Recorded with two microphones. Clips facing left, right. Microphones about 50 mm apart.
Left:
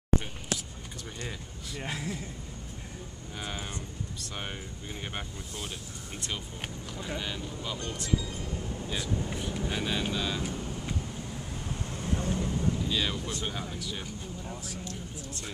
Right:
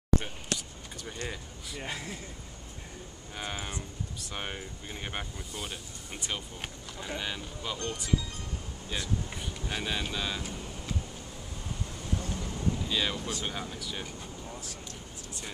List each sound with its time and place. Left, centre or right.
1.7 s speech: centre
3.3 s speech: centre
11.9 s vehicle: left
12.2 s vehicle: centre
12.7 s speech: centre